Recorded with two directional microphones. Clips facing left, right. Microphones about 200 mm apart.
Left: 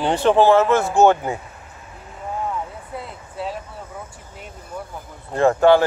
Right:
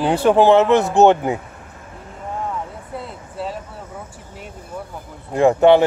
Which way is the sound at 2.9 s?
Centre (ahead or behind).